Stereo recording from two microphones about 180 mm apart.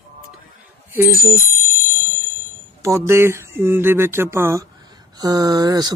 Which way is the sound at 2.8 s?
15° right (ahead or behind).